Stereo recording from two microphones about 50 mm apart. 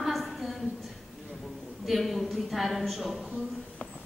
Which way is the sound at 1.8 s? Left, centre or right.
Centre.